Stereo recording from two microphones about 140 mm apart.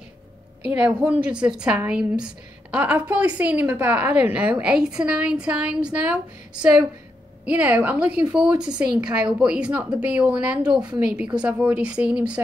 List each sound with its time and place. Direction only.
0.7 s a woman's voice: 10° right (ahead or behind)